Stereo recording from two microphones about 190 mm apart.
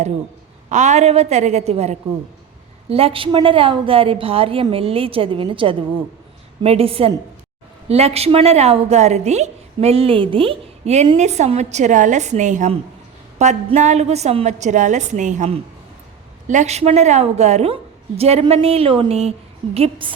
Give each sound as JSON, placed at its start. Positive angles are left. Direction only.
{"t": 0.7, "sound": "a woman's voice", "side_deg": -40}